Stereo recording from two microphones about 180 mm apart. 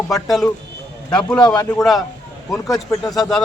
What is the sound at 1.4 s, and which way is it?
Speech, 20° left (ahead or behind).